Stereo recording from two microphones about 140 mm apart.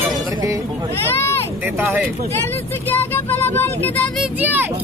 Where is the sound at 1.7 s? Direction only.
15° right (ahead or behind).